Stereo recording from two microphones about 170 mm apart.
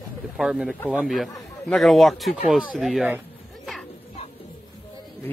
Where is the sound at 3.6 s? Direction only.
Centre (ahead or behind).